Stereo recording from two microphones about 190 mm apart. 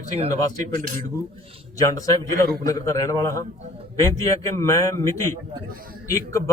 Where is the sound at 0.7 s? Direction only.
45° right (ahead or behind).